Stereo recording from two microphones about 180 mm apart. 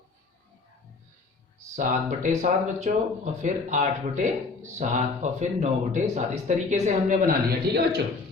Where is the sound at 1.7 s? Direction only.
45° right (ahead or behind).